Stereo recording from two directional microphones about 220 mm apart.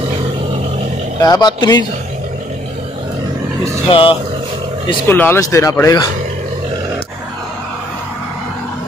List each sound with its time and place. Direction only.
1.2 s speech: 20° left (ahead or behind)
3.9 s speech: 25° left (ahead or behind)
5.0 s speech: 10° left (ahead or behind)